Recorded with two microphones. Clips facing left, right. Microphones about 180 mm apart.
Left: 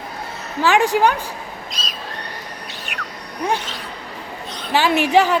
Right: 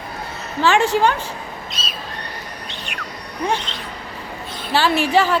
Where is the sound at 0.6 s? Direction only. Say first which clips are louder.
Even; 15° left (ahead or behind).